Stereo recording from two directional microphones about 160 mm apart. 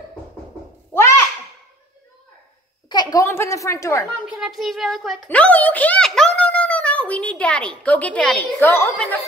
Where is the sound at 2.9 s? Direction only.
25° left (ahead or behind).